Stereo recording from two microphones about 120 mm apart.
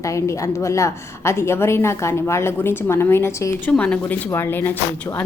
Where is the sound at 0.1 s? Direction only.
25° left (ahead or behind).